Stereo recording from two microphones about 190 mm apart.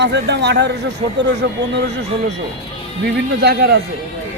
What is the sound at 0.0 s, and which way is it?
Speech, 65° right (ahead or behind).